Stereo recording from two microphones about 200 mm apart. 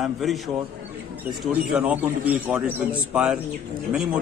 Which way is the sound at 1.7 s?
5° right (ahead or behind).